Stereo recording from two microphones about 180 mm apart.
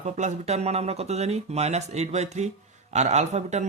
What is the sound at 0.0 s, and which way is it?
Speech, 40° right (ahead or behind).